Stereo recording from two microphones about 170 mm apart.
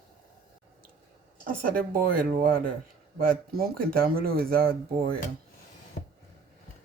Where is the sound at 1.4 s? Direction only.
55° right (ahead or behind).